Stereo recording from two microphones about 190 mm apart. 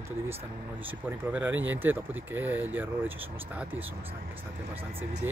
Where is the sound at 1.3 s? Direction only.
10° right (ahead or behind).